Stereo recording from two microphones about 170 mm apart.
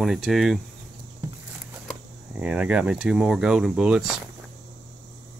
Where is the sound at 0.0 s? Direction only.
Centre (ahead or behind).